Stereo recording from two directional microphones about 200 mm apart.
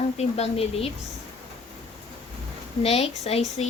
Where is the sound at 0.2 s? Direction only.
30° left (ahead or behind).